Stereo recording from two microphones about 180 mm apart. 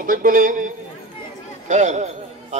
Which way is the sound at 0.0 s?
50° right (ahead or behind).